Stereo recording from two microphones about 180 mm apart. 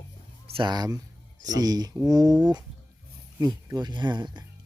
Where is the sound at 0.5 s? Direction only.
25° right (ahead or behind).